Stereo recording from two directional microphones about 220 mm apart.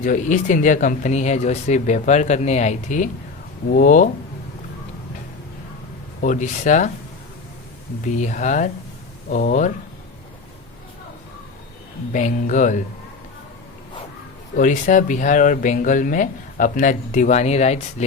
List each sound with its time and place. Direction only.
0.0 s speech: 35° left (ahead or behind)
6.2 s speech: 35° left (ahead or behind)
8.1 s speech: 35° left (ahead or behind)
12.1 s speech: 35° left (ahead or behind)
14.5 s speech: 35° left (ahead or behind)